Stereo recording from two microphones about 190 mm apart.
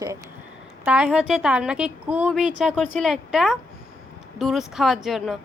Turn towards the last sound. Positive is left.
turn(degrees=0)  # may be behind; listen again after turning